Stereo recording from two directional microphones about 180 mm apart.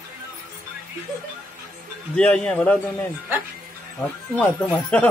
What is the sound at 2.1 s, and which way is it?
Speech, 5° left (ahead or behind).